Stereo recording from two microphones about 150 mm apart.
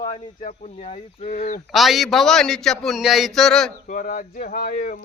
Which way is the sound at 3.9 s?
60° left (ahead or behind).